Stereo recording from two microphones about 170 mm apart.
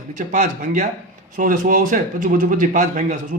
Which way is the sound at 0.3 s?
50° right (ahead or behind).